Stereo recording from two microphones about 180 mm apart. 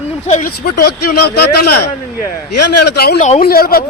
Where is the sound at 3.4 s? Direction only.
55° left (ahead or behind).